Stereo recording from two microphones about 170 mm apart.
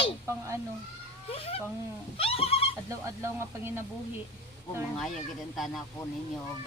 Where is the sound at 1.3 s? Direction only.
35° left (ahead or behind).